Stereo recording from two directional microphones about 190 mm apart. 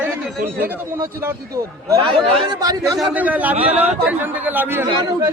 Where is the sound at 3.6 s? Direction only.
30° right (ahead or behind).